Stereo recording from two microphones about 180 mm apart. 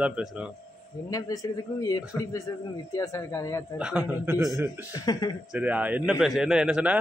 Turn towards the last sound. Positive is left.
turn(degrees=-5)  # may be behind; listen again after turning